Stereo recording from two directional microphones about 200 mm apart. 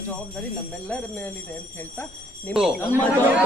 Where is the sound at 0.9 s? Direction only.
5° left (ahead or behind).